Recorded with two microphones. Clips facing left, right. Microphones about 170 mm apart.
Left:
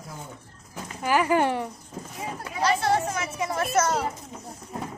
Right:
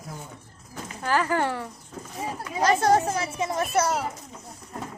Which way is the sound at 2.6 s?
45° right (ahead or behind).